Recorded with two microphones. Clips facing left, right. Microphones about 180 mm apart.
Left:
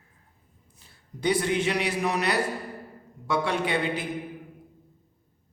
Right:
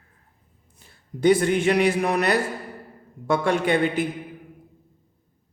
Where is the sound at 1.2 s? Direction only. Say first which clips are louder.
Right 6 dB; 50° right (ahead or behind).